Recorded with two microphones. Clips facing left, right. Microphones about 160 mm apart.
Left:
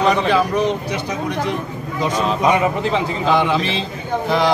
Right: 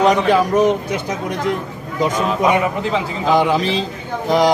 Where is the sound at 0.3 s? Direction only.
45° right (ahead or behind).